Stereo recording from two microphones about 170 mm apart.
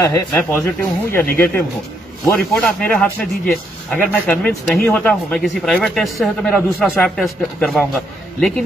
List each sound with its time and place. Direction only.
0.0 s speech: 15° left (ahead or behind)